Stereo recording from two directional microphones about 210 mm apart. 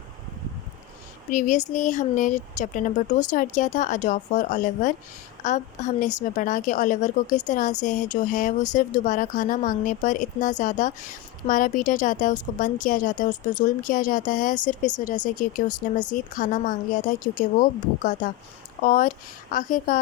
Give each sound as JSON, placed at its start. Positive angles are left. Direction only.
{"t": 1.3, "sound": "speech", "side_deg": 35}